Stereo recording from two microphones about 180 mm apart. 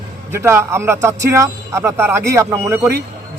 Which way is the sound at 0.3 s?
15° right (ahead or behind).